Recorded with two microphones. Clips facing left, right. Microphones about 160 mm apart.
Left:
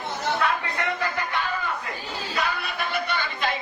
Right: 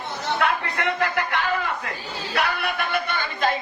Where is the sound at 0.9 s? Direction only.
90° right.